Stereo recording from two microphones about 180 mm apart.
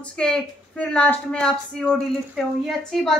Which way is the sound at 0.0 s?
5° left (ahead or behind).